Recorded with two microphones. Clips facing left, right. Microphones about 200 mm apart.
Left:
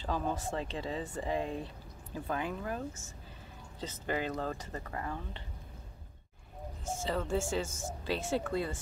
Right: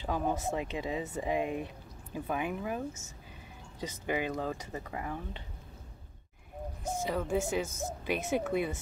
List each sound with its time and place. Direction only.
0.0 s speech: 15° right (ahead or behind)
6.8 s speech: 15° right (ahead or behind)